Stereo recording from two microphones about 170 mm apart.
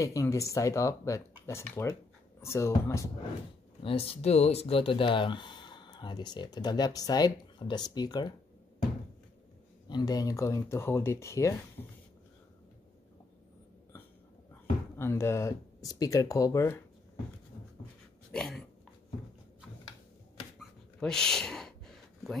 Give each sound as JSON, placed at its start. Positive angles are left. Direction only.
{"t": 0.0, "sound": "speech", "side_deg": 20}
{"t": 3.8, "sound": "speech", "side_deg": 35}
{"t": 9.8, "sound": "speech", "side_deg": 25}
{"t": 15.0, "sound": "speech", "side_deg": 15}
{"t": 18.3, "sound": "dog", "side_deg": 5}
{"t": 20.5, "sound": "a sound", "side_deg": 5}